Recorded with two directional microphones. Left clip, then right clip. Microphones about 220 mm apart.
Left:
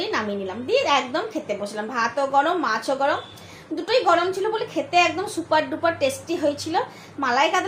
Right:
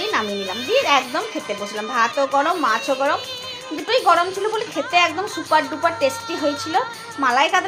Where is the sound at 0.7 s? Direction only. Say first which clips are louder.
Right 3 dB; 30° right (ahead or behind).